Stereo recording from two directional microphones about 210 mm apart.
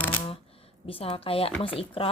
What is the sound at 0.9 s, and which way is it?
Speech, 25° left (ahead or behind).